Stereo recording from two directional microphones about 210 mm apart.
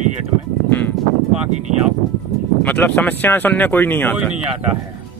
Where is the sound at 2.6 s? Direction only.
10° left (ahead or behind).